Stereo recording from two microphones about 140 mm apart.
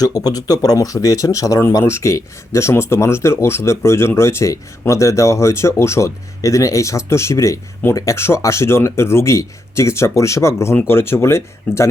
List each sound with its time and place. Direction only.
0.0 s speech: 25° left (ahead or behind)